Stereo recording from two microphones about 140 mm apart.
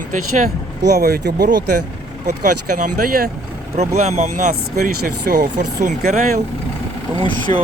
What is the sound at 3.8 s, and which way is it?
Speech, 50° right (ahead or behind).